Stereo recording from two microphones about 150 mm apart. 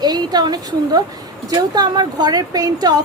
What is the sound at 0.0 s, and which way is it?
A woman's voice, 25° right (ahead or behind).